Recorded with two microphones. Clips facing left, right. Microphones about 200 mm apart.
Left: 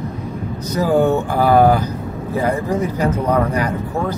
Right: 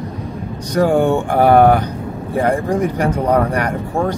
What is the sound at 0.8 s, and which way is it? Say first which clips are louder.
Speech: right 2 dB; 60° right (ahead or behind).